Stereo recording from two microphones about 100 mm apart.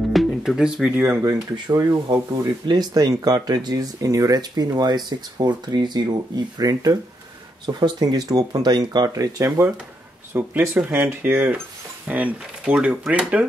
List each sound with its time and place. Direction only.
0.1 s music: centre (ahead or behind)
0.9 s speech: 25° right (ahead or behind)
1.2 s speech: 40° right (ahead or behind)
10.3 s speech: 20° right (ahead or behind)